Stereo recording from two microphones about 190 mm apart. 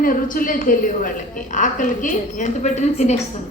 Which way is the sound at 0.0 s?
45° left (ahead or behind).